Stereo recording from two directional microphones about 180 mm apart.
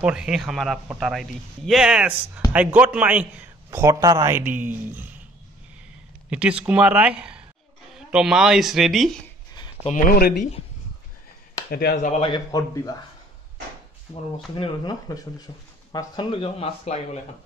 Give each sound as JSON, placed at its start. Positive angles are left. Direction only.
{"t": 0.0, "sound": "a man's voice", "side_deg": -5}
{"t": 6.6, "sound": "a man's voice", "side_deg": -10}
{"t": 9.8, "sound": "speech", "side_deg": 50}
{"t": 11.7, "sound": "speech", "side_deg": 55}
{"t": 12.1, "sound": "speech", "side_deg": 30}
{"t": 12.4, "sound": "speech", "side_deg": 20}
{"t": 14.6, "sound": "speech", "side_deg": 20}